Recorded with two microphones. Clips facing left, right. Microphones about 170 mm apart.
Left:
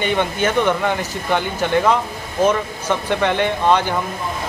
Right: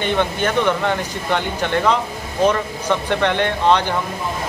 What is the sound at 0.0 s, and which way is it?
Speech, 10° left (ahead or behind).